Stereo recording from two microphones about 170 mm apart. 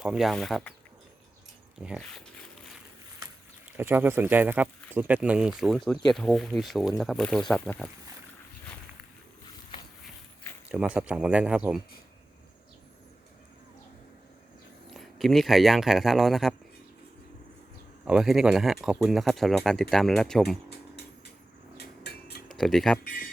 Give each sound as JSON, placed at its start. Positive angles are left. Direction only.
{"t": 0.0, "sound": "speech", "side_deg": 0}
{"t": 1.8, "sound": "speech", "side_deg": 0}
{"t": 3.7, "sound": "speech", "side_deg": -10}
{"t": 10.7, "sound": "speech", "side_deg": -5}
{"t": 14.8, "sound": "speech", "side_deg": 0}
{"t": 18.0, "sound": "speech", "side_deg": -5}
{"t": 21.8, "sound": "a sound", "side_deg": 75}
{"t": 22.4, "sound": "speech", "side_deg": 0}